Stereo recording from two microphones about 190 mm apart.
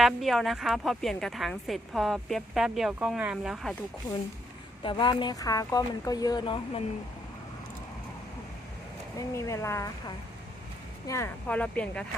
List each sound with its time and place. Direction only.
0.0 s a woman's voice: centre (ahead or behind)
4.8 s speech: 25° left (ahead or behind)
9.1 s speech: 15° left (ahead or behind)
11.1 s speech: 10° left (ahead or behind)